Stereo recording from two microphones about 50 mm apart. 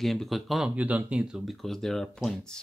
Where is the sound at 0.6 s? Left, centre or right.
Right.